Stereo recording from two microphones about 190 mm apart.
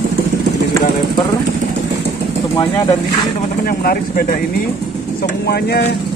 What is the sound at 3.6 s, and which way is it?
Speech, 50° left (ahead or behind).